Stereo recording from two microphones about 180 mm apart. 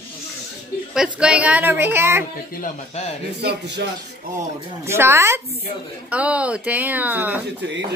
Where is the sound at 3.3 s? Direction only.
70° right (ahead or behind).